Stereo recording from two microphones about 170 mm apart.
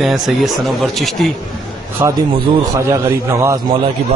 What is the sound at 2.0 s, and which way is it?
Speech, 20° right (ahead or behind).